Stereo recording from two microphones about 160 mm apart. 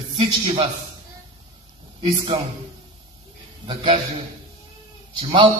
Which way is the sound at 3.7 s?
35° right (ahead or behind).